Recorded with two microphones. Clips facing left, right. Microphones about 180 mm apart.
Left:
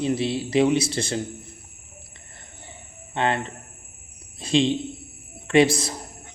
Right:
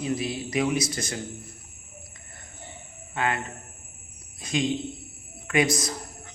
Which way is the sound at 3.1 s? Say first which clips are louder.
Left 4 dB; 30° left (ahead or behind).